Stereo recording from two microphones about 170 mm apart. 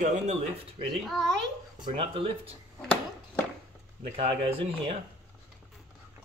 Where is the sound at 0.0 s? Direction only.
50° right (ahead or behind).